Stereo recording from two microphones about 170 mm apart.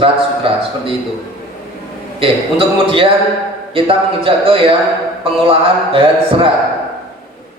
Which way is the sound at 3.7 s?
35° right (ahead or behind).